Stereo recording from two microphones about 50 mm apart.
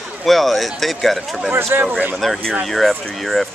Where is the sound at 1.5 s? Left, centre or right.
Right.